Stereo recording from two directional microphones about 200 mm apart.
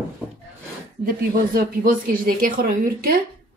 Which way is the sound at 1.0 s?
45° right (ahead or behind).